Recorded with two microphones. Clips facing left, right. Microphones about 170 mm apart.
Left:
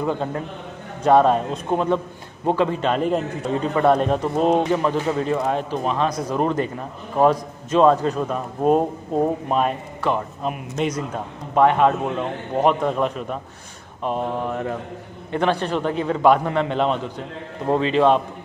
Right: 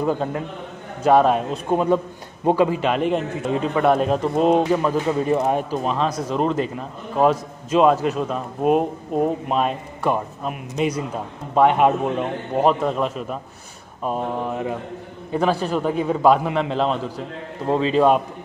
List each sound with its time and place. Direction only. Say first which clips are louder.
0.0 s a man's voice: right 2 dB; 5° right (ahead or behind)
5.3 s a man's voice: right 2 dB; 15° right (ahead or behind)
5.9 s a man's voice: left 2 dB; centre (ahead or behind)
7.2 s a man's voice: left 1 dB; 5° right (ahead or behind)
9.5 s a man's voice: even; 5° left (ahead or behind)
11.5 s a man's voice: even; 15° right (ahead or behind)
12.6 s a man's voice: even; centre (ahead or behind)